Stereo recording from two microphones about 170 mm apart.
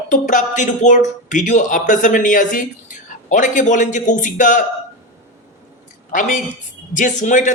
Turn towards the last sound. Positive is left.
turn(degrees=45)  # may be behind; listen again after turning